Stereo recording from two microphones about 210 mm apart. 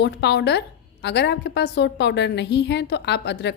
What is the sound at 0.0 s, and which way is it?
A woman's voice, 55° left (ahead or behind).